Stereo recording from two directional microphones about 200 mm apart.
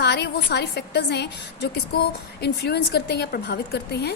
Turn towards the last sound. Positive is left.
turn(degrees=55)  # may be behind; listen again after turning